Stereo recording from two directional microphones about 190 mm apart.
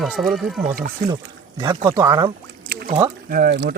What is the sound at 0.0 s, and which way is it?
Speech, centre (ahead or behind).